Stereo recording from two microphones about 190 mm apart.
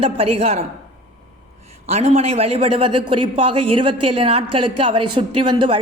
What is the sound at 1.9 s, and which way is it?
A woman's voice, 35° right (ahead or behind).